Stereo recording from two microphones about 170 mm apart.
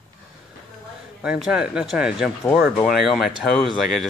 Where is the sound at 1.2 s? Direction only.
5° right (ahead or behind).